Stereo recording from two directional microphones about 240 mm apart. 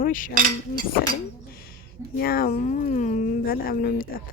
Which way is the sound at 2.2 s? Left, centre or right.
Left.